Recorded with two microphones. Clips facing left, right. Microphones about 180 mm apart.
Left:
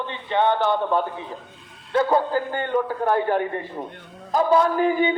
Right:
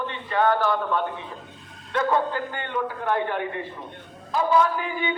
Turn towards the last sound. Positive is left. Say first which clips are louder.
# left 8 dB
turn(degrees=40)  # may be behind; listen again after turning